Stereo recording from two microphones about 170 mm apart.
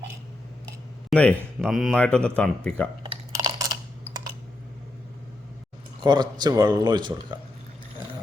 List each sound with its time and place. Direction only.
1.1 s speech: 5° left (ahead or behind)
3.0 s a sound: 20° right (ahead or behind)
6.0 s speech: 25° right (ahead or behind)